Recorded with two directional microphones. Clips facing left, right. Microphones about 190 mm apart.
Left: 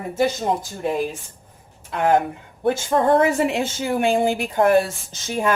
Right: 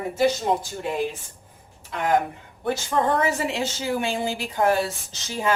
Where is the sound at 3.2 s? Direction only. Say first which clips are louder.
Left 5 dB; 55° left (ahead or behind).